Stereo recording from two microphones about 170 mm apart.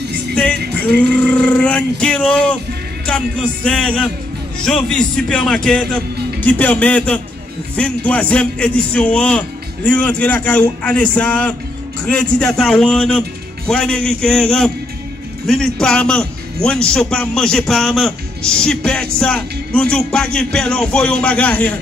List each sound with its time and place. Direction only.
0.3 s music: 5° left (ahead or behind)
0.9 s a man's voice: 5° left (ahead or behind)